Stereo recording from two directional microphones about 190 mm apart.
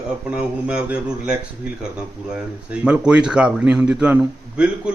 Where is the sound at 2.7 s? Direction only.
5° right (ahead or behind).